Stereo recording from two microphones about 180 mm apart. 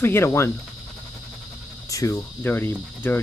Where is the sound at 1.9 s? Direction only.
20° left (ahead or behind).